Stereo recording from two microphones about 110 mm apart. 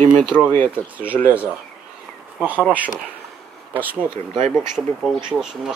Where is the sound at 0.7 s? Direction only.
15° right (ahead or behind).